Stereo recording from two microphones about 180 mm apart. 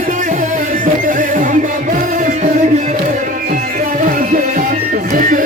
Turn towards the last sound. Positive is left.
turn(degrees=-50)  # may be behind; listen again after turning